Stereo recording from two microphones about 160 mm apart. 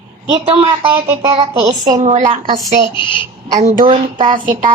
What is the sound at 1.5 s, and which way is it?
Speech, 25° right (ahead or behind).